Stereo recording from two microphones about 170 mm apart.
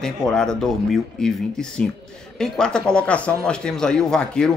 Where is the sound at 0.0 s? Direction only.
5° left (ahead or behind).